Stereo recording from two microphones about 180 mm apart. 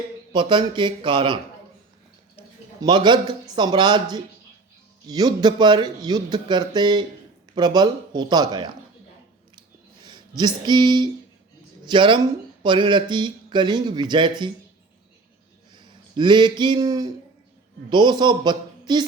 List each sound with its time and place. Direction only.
0.3 s speech: 25° right (ahead or behind)
2.8 s speech: 25° right (ahead or behind)
10.0 s speech: 25° right (ahead or behind)
15.7 s a sound: 25° right (ahead or behind)
17.8 s speech: 25° right (ahead or behind)